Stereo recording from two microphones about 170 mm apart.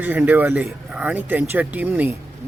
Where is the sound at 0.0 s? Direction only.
10° right (ahead or behind).